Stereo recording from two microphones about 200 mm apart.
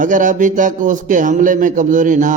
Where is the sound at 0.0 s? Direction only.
40° right (ahead or behind).